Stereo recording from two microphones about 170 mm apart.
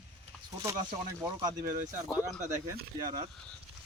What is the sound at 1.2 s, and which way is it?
Speech, 20° right (ahead or behind).